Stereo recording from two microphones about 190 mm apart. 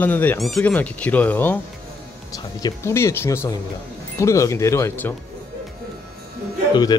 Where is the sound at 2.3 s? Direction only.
20° left (ahead or behind).